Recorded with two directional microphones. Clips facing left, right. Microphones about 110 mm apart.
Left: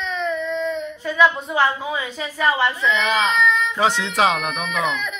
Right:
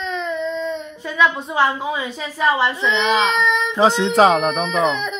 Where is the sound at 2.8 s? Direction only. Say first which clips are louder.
Right 2 dB; 20° right (ahead or behind).